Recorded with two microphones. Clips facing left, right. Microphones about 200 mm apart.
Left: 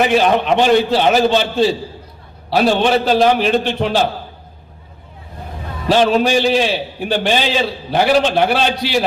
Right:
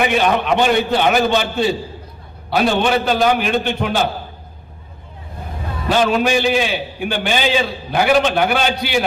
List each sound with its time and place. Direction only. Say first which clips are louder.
0.0 s a man's voice: left 3 dB; 35° left (ahead or behind)
5.9 s a man's voice: left 3 dB; 35° left (ahead or behind)